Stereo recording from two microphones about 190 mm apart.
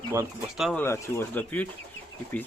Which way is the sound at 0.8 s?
15° left (ahead or behind).